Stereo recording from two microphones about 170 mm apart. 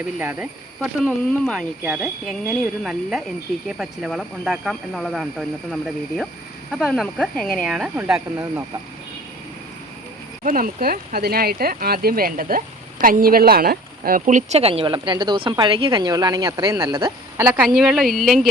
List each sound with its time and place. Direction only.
0.2 s speech: 10° right (ahead or behind)
1.8 s speech: 5° right (ahead or behind)
10.4 s speech: 55° right (ahead or behind); by 18.4 s centre (ahead or behind)